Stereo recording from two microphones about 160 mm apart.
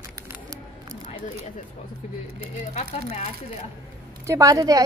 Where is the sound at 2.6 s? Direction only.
45° left (ahead or behind).